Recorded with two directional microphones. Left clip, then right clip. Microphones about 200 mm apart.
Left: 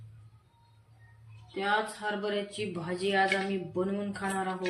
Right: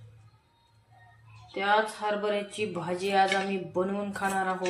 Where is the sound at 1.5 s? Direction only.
15° left (ahead or behind).